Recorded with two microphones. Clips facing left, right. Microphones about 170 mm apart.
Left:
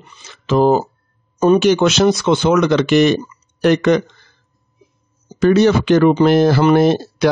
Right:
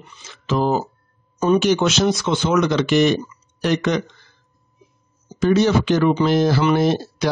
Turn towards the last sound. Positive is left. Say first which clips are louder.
# left 5 dB
turn(degrees=65)  # may be behind; listen again after turning